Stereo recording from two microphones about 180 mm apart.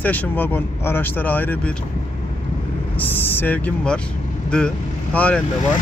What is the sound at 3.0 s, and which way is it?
Speech, 10° left (ahead or behind).